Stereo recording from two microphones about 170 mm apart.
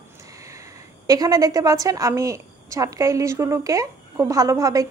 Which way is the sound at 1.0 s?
20° right (ahead or behind).